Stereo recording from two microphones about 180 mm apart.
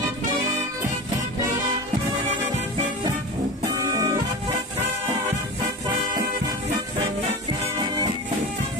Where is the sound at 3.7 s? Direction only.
20° right (ahead or behind).